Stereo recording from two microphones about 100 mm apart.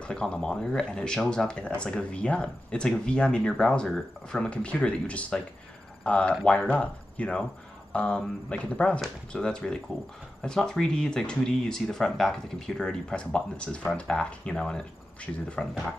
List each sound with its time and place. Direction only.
0.0 s speech: 10° left (ahead or behind)